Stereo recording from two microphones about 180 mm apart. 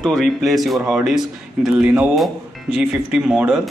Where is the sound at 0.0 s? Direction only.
Centre (ahead or behind).